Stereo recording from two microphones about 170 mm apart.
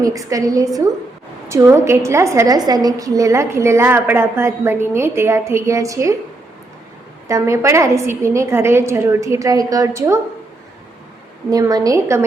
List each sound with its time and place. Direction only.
0.0 s a woman's voice: 20° right (ahead or behind)
7.3 s a woman's voice: 15° right (ahead or behind)
11.5 s a woman's voice: 20° right (ahead or behind)